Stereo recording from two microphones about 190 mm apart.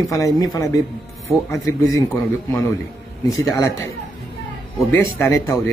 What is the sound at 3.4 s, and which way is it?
Speech, 15° left (ahead or behind).